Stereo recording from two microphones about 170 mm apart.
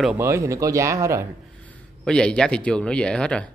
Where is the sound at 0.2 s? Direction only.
15° right (ahead or behind).